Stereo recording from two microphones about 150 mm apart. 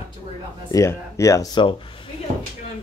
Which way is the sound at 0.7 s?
20° left (ahead or behind).